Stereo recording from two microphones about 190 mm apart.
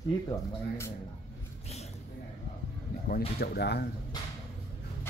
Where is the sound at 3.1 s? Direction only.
55° left (ahead or behind).